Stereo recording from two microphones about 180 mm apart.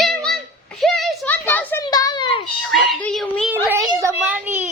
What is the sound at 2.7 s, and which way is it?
Speech, 5° left (ahead or behind).